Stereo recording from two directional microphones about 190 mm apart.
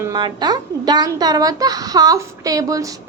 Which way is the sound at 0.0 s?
20° right (ahead or behind).